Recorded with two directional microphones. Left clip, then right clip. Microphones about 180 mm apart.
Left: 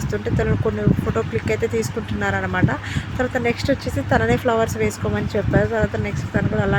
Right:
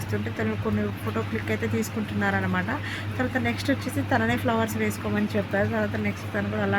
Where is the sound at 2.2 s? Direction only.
20° left (ahead or behind).